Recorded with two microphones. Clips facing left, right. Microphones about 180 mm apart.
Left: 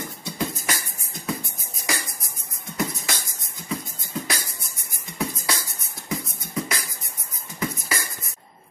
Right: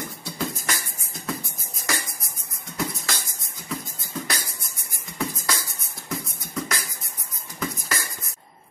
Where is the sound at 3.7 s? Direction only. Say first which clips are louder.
Left 2 dB; centre (ahead or behind).